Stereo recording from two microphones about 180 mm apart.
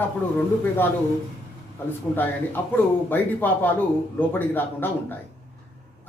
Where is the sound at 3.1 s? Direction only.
10° left (ahead or behind).